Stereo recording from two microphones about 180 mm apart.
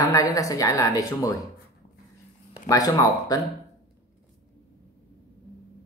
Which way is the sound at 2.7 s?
20° left (ahead or behind).